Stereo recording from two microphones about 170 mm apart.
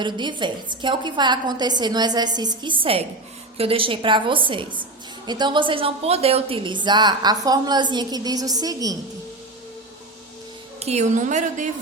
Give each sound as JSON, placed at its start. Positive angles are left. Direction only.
{"t": 0.0, "sound": "a woman's voice", "side_deg": -25}
{"t": 10.8, "sound": "a woman's voice", "side_deg": -40}